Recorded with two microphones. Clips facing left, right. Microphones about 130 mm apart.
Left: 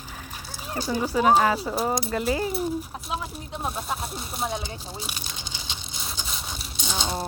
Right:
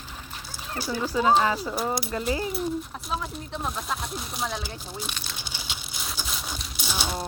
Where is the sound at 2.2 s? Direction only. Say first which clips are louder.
Left 2 dB; 30° left (ahead or behind).